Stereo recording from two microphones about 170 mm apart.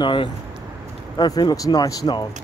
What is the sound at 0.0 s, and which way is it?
Speech, 30° left (ahead or behind).